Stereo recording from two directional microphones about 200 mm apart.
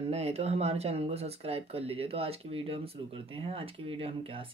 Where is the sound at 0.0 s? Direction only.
30° right (ahead or behind).